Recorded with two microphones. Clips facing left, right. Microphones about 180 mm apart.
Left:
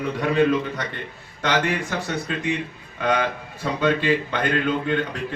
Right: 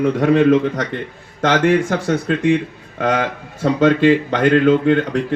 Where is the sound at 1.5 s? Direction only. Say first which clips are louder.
Right 8 dB; 45° right (ahead or behind).